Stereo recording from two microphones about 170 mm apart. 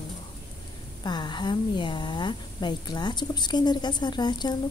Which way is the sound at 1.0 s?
25° left (ahead or behind).